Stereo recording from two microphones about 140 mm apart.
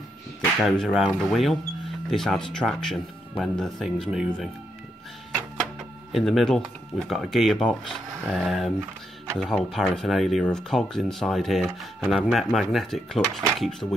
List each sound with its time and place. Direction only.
0.6 s speech: centre (ahead or behind)
6.1 s speech: centre (ahead or behind)